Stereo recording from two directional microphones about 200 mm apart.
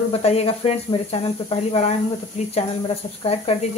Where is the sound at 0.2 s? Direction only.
30° left (ahead or behind).